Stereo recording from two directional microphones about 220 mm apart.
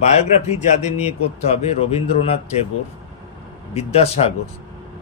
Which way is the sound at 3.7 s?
25° left (ahead or behind).